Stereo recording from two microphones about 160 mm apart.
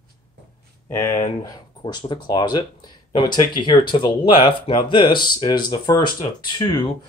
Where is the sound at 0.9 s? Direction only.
15° left (ahead or behind).